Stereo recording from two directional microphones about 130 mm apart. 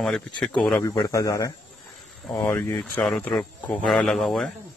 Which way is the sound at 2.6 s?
10° left (ahead or behind).